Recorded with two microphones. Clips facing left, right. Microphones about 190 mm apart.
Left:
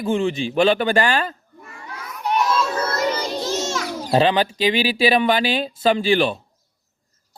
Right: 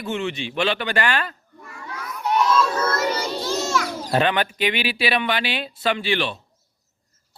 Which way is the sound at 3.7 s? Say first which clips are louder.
Left 4 dB; 30° left (ahead or behind).